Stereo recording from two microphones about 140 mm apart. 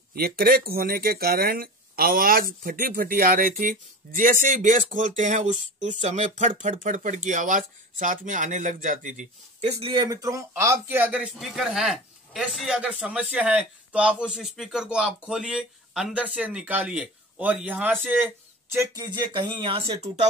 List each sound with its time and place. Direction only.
0.1 s speech: 90° right; by 10.0 s 40° right (ahead or behind)
10.0 s speech: 25° right (ahead or behind)
19.0 s speech: 30° right (ahead or behind)